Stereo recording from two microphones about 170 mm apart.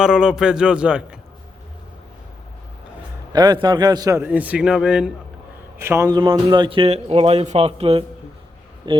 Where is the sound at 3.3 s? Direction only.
25° right (ahead or behind).